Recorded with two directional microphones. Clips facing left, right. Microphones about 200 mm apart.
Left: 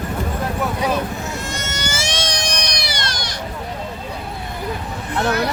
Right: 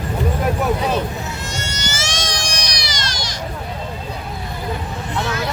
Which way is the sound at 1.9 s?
60° left (ahead or behind).